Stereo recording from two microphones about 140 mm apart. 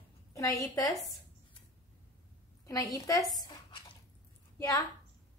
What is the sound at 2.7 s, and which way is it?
Speech, 25° left (ahead or behind).